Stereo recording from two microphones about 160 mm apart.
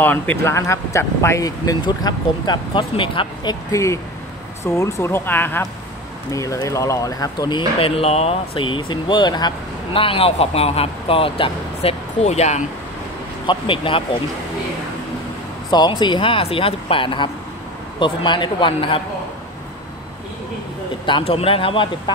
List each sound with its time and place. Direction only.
0.0 s speech: 10° left (ahead or behind); by 3.5 s 30° left (ahead or behind)
3.7 s speech: 20° left (ahead or behind); by 12.6 s 45° left (ahead or behind)
13.5 s speech: 30° left (ahead or behind)
15.7 s speech: 25° left (ahead or behind)
21.0 s speech: 35° left (ahead or behind)